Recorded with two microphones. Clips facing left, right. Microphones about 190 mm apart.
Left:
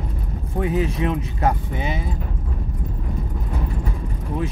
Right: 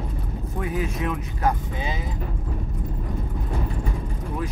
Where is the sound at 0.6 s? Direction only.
25° left (ahead or behind).